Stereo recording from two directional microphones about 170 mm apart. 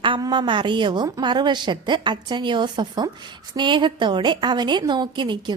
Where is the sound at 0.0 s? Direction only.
25° right (ahead or behind).